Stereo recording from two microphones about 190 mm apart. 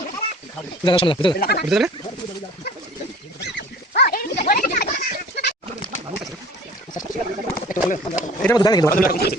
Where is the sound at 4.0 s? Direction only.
55° left (ahead or behind).